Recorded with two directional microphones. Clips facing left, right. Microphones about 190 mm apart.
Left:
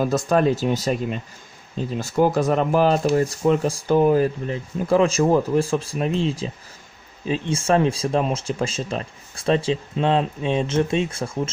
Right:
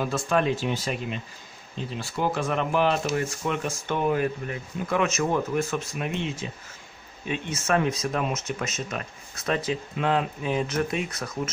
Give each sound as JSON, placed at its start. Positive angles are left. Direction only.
{"t": 0.0, "sound": "speech", "side_deg": 40}